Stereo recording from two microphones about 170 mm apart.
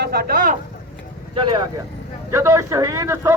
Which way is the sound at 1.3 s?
25° right (ahead or behind).